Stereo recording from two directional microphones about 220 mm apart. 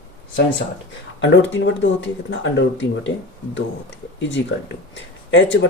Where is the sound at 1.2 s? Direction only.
55° left (ahead or behind).